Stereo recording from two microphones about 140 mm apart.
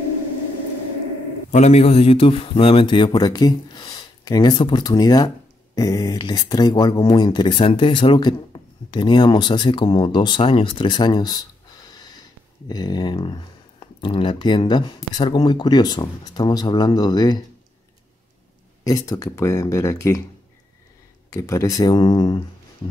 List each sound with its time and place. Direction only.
1.5 s speech: 50° left (ahead or behind); by 11.4 s 30° left (ahead or behind)
11.9 s a sound: 30° left (ahead or behind)
12.6 s speech: 30° left (ahead or behind)
18.9 s speech: 25° left (ahead or behind)
21.3 s speech: 20° left (ahead or behind)